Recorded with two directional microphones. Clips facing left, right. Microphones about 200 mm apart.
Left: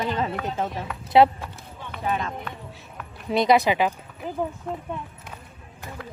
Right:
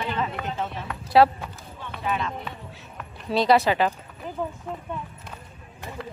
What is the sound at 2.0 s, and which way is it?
Speech, 40° left (ahead or behind).